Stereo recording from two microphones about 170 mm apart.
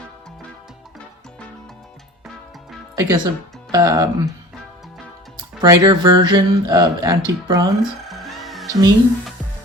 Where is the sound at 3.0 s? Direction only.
20° right (ahead or behind).